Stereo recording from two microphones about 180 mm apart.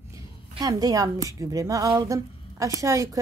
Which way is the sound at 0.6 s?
20° right (ahead or behind).